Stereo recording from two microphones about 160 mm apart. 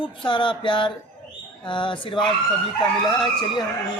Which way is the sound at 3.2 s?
30° left (ahead or behind).